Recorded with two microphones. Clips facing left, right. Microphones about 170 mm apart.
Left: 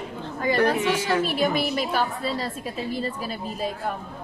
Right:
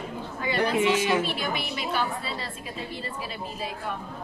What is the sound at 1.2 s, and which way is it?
A woman's voice, 45° left (ahead or behind).